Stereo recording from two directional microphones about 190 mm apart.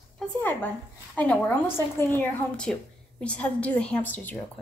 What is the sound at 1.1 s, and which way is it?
A woman's voice, 10° left (ahead or behind).